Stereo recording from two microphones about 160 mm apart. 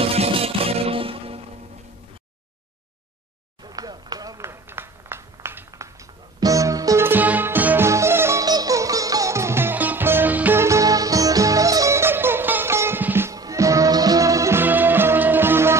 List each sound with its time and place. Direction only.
0.0 s music: 40° right (ahead or behind)
3.6 s a sound: 25° right (ahead or behind)
6.4 s music: 20° right (ahead or behind)